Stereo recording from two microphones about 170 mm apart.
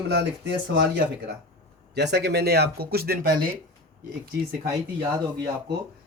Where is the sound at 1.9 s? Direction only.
80° right; by 3.5 s 60° right (ahead or behind).